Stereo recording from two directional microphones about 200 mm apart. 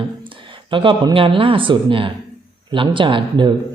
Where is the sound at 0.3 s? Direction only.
25° right (ahead or behind).